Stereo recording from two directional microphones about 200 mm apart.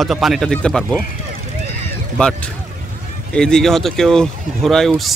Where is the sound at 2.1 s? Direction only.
5° left (ahead or behind).